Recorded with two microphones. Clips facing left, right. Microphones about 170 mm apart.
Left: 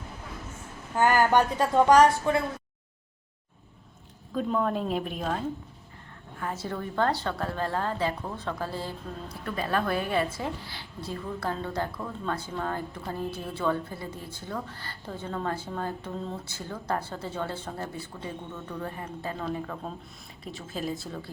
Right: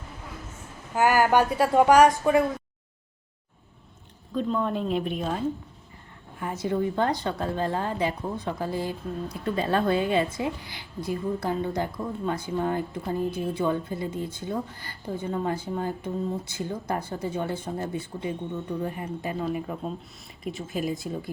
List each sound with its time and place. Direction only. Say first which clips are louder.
0.9 s a woman's voice: right 1 dB; 10° right (ahead or behind)
4.4 s a woman's voice: right 1 dB; 5° left (ahead or behind)
6.4 s a woman's voice: right 6 dB; 15° right (ahead or behind)
9.4 s a woman's voice: right 4 dB; 25° right (ahead or behind)